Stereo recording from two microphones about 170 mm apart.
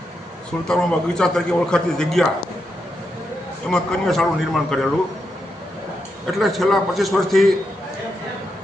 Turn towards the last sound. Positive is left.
turn(degrees=0)  # may be behind; listen again after turning